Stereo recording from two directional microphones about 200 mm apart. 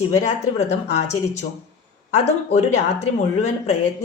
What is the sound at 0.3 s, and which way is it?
Speech, 35° left (ahead or behind).